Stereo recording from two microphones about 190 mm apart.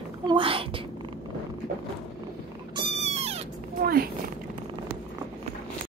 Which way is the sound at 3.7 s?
50° right (ahead or behind).